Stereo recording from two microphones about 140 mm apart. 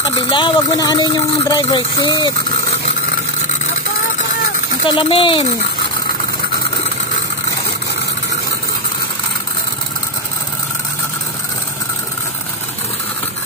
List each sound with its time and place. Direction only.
0.3 s speech: 35° left (ahead or behind)
4.8 s speech: 40° left (ahead or behind)